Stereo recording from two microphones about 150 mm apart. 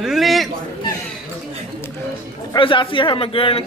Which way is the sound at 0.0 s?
Centre (ahead or behind).